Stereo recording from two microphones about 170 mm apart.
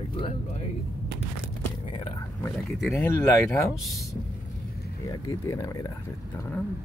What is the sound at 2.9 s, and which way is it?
Speech, 15° left (ahead or behind).